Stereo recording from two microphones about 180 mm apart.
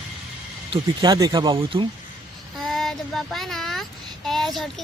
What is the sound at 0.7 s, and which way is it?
Speech, 25° right (ahead or behind).